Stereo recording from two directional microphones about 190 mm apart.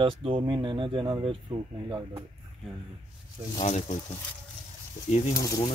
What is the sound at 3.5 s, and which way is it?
Speech, 35° left (ahead or behind).